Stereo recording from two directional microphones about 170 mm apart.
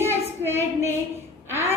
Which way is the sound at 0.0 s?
15° right (ahead or behind).